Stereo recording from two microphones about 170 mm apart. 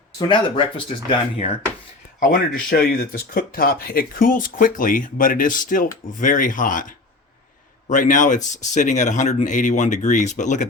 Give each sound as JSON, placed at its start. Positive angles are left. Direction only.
{"t": 0.2, "sound": "speech", "side_deg": 30}
{"t": 2.1, "sound": "speech", "side_deg": 55}